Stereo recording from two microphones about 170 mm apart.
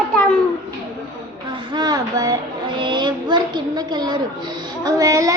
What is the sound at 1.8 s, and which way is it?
Child singing, 25° right (ahead or behind).